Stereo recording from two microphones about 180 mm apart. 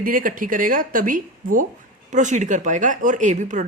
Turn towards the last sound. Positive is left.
turn(degrees=-45)  # may be behind; listen again after turning